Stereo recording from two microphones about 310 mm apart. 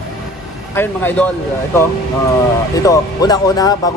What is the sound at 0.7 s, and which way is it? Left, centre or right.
Speech, centre.